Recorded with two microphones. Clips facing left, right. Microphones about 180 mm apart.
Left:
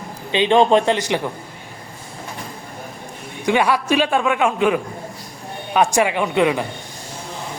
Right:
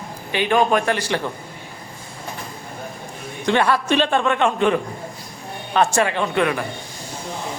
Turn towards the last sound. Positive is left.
turn(degrees=20)  # may be behind; listen again after turning